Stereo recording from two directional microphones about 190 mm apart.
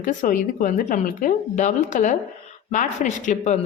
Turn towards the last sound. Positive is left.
turn(degrees=40)  # may be behind; listen again after turning